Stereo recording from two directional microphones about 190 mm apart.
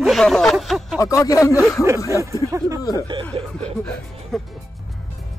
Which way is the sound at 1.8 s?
15° right (ahead or behind).